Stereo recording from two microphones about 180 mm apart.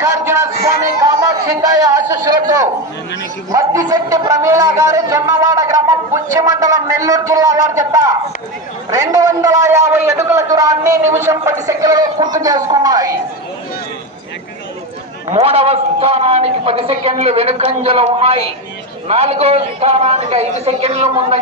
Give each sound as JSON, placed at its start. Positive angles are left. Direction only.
{"t": 0.0, "sound": "a sound", "side_deg": -15}
{"t": 1.0, "sound": "speech", "side_deg": -20}
{"t": 3.5, "sound": "a man's voice", "side_deg": -20}
{"t": 15.2, "sound": "a man's voice", "side_deg": -35}